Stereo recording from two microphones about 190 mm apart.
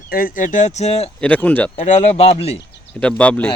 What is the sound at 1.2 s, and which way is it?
Speech, 10° left (ahead or behind).